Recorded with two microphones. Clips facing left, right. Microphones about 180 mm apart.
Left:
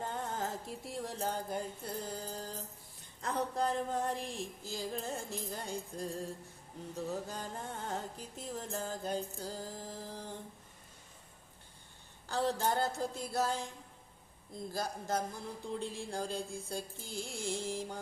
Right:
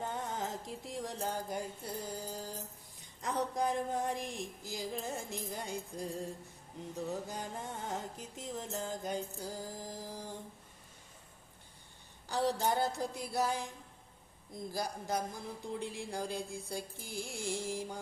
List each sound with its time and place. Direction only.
0.0 s music: 15° right (ahead or behind)
12.3 s music: 15° right (ahead or behind)
17.6 s music: 15° right (ahead or behind)